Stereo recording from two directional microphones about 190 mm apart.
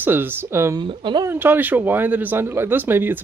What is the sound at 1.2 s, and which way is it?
Speech, 10° right (ahead or behind).